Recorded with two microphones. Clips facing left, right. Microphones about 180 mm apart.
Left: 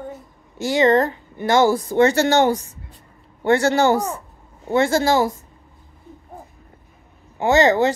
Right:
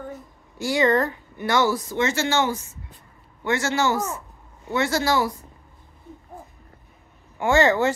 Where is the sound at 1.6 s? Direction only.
55° left (ahead or behind).